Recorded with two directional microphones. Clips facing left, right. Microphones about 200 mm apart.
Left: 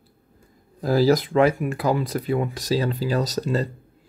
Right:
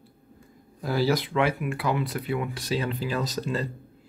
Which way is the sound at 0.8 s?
40° left (ahead or behind).